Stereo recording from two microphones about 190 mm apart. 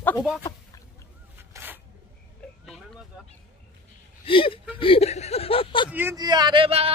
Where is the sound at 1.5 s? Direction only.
10° right (ahead or behind).